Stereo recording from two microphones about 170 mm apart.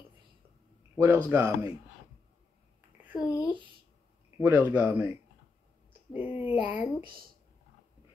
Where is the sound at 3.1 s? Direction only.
25° left (ahead or behind).